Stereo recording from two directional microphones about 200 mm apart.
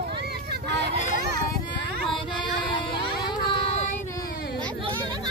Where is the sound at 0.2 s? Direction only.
55° right (ahead or behind).